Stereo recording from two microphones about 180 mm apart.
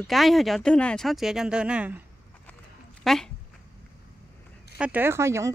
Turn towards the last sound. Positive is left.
turn(degrees=-15)  # may be behind; listen again after turning